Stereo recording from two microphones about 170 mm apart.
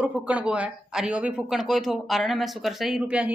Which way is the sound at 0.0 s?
10° right (ahead or behind).